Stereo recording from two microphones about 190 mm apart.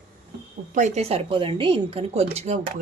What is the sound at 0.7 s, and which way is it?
A woman's voice, 40° right (ahead or behind).